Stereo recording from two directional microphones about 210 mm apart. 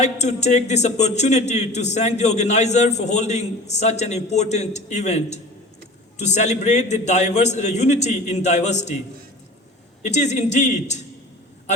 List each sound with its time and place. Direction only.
0.0 s a man's voice: 35° left (ahead or behind)
10.0 s a man's voice: 35° left (ahead or behind)